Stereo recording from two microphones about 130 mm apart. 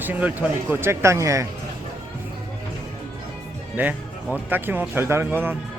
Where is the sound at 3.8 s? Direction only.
15° right (ahead or behind).